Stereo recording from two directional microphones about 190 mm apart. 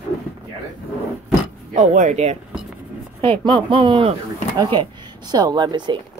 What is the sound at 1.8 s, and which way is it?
Speech, 40° right (ahead or behind).